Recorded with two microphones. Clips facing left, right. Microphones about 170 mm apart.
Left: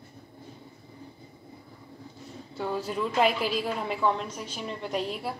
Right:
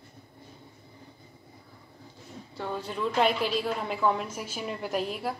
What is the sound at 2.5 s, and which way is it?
A woman's voice, 5° left (ahead or behind).